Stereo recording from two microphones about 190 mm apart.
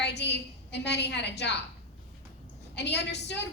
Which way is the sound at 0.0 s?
65° left (ahead or behind).